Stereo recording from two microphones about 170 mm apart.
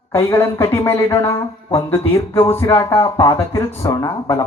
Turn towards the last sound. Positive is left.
turn(degrees=15)  # may be behind; listen again after turning